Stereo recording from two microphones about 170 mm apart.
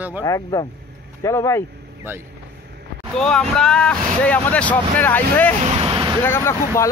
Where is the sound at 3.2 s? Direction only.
5° left (ahead or behind).